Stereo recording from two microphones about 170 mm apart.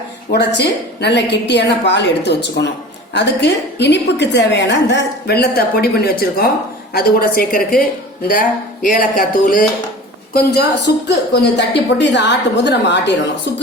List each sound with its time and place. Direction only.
0.3 s a woman's voice: 80° left; by 9.6 s 55° left (ahead or behind)
10.3 s a woman's voice: 70° left (ahead or behind)
11.5 s a woman's voice: 90° left